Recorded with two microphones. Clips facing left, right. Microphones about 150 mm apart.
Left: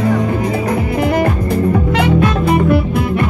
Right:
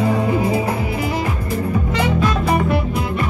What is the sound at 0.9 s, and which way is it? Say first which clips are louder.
Music: left 7 dB; 60° left (ahead or behind).